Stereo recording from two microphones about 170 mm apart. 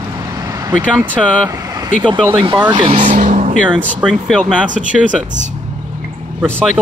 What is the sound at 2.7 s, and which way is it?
Speech, 30° right (ahead or behind).